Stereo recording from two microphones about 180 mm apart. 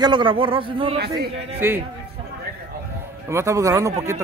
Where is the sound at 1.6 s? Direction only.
10° right (ahead or behind).